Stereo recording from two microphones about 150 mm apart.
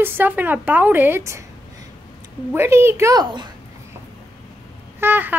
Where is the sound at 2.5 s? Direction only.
15° right (ahead or behind).